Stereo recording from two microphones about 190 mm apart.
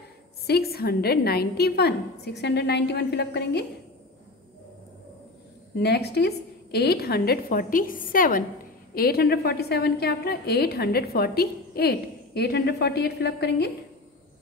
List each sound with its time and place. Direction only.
0.5 s a woman's voice: 55° left (ahead or behind)
5.8 s a woman's voice: 60° left (ahead or behind)